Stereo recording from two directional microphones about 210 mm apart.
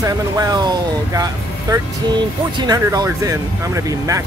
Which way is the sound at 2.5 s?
20° right (ahead or behind).